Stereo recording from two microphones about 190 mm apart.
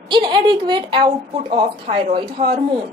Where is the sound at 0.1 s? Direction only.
25° right (ahead or behind).